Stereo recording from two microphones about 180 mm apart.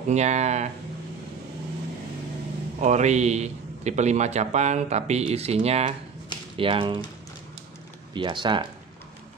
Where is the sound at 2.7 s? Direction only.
40° right (ahead or behind).